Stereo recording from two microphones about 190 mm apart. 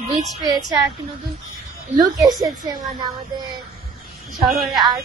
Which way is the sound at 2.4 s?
20° right (ahead or behind).